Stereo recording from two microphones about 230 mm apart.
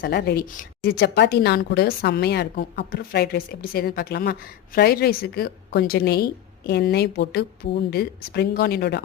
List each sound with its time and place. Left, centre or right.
0.0 s a woman's voice: left